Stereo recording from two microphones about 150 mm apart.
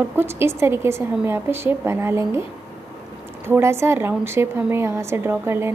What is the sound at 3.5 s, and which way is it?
A woman's voice, 15° right (ahead or behind).